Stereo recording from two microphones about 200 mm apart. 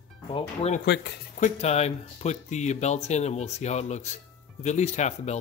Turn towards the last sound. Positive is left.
turn(degrees=35)  # may be behind; listen again after turning